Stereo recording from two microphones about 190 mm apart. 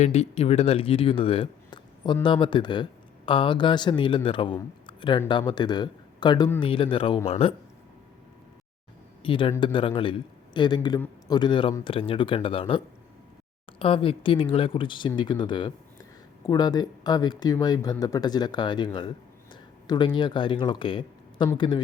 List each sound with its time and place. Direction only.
0.0 s speech: 35° left (ahead or behind)
9.2 s speech: 25° left (ahead or behind)